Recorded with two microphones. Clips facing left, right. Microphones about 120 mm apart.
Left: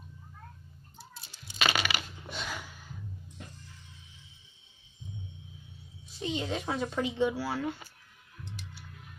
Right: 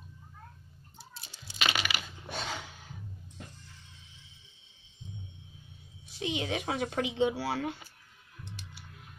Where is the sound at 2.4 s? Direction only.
25° right (ahead or behind).